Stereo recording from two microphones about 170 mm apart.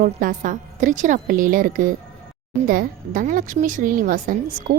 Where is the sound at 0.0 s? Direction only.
50° right (ahead or behind).